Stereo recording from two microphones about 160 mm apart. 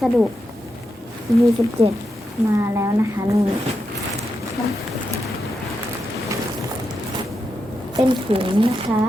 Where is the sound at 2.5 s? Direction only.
20° right (ahead or behind).